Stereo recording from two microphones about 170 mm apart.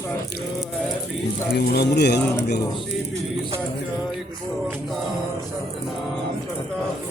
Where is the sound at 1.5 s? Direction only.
75° left (ahead or behind).